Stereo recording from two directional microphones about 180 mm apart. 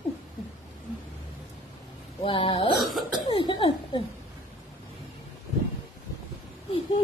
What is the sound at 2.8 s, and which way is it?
Speech, centre (ahead or behind).